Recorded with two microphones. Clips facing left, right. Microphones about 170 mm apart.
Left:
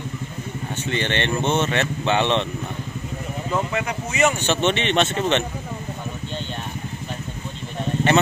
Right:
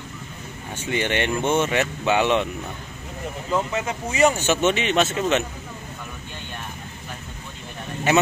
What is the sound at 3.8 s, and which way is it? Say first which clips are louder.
Speech: right 3 dB; 30° right (ahead or behind).